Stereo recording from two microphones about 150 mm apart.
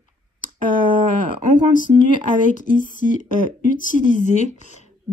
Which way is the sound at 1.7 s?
60° left (ahead or behind).